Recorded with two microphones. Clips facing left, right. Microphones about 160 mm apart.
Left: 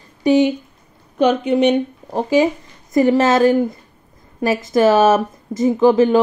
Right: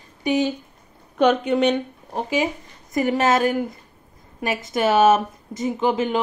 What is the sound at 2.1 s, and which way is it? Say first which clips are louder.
A woman's voice: left 8 dB; 35° left (ahead or behind).